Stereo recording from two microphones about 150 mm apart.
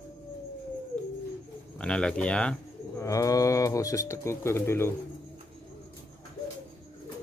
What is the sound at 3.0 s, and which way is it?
Speech, 20° left (ahead or behind).